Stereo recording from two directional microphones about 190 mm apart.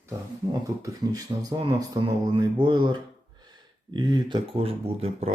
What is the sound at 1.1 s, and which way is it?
Speech, 20° right (ahead or behind).